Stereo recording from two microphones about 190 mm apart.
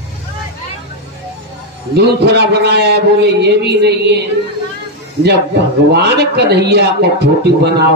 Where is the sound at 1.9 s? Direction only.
60° right (ahead or behind).